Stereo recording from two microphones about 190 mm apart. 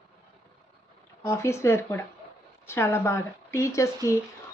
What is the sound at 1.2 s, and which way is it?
A woman's voice, 15° left (ahead or behind).